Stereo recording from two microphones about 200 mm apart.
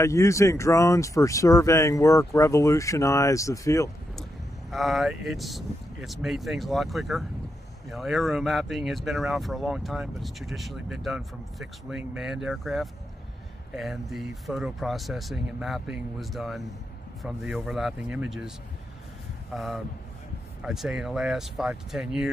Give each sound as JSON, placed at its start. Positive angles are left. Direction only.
{"t": 0.0, "sound": "speech", "side_deg": 15}
{"t": 4.2, "sound": "speech", "side_deg": 0}
{"t": 19.5, "sound": "speech", "side_deg": 0}